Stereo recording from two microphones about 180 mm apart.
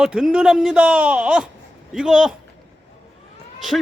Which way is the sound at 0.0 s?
5° right (ahead or behind).